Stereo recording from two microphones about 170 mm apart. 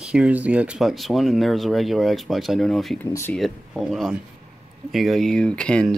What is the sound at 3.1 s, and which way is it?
Speech, 15° left (ahead or behind).